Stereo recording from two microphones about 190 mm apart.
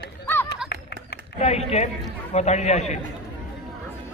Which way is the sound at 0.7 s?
60° left (ahead or behind).